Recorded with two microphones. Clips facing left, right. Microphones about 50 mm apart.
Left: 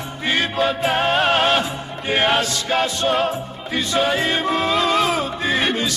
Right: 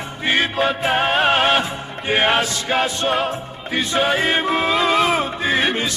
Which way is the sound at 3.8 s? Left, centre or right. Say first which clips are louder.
Even; right.